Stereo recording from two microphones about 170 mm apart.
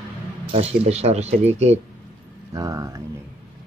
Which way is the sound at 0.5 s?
40° right (ahead or behind).